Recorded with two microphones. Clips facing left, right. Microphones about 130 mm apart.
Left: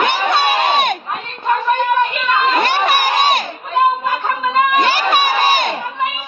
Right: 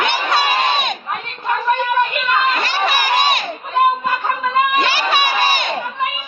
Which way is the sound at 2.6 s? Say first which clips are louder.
Left 3 dB; 55° left (ahead or behind).